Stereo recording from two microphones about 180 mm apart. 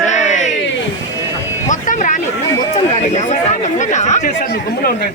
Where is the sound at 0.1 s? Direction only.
40° left (ahead or behind).